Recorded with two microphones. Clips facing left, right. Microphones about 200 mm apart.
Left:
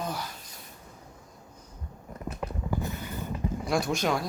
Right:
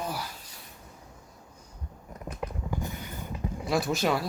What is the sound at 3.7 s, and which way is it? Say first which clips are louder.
Speech: right 1 dB; 5° right (ahead or behind).